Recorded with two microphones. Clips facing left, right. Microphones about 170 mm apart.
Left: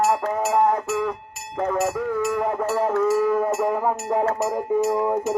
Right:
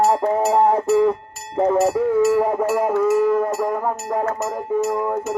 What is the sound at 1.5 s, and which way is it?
Speech, 30° right (ahead or behind).